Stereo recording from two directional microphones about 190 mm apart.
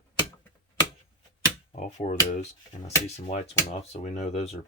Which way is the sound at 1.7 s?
40° left (ahead or behind).